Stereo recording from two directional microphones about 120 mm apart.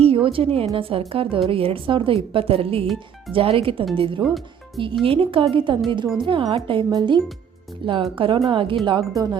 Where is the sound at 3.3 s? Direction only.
50° right (ahead or behind).